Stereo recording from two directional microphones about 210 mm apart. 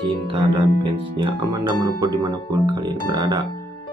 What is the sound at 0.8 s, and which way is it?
Speech, 25° right (ahead or behind).